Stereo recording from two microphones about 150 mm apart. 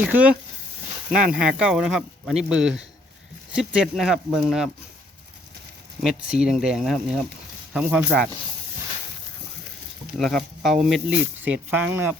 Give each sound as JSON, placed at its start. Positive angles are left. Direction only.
{"t": 0.0, "sound": "speech", "side_deg": -10}
{"t": 6.0, "sound": "speech", "side_deg": -5}
{"t": 10.2, "sound": "speech", "side_deg": 0}